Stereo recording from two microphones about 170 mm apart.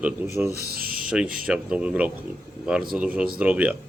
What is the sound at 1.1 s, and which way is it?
Speech, 5° right (ahead or behind).